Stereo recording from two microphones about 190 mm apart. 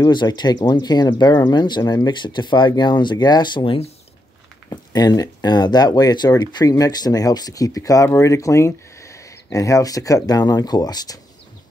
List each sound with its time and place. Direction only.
0.0 s speech: 20° left (ahead or behind)